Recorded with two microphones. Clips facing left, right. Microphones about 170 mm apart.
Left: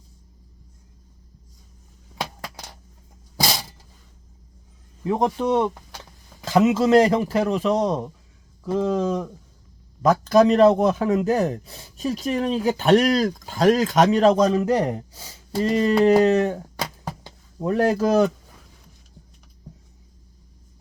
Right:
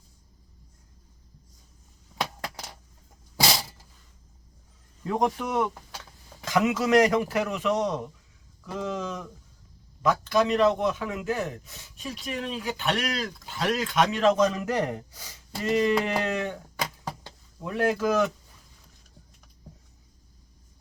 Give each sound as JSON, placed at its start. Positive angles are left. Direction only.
{"t": 5.0, "sound": "a man's voice", "side_deg": 25}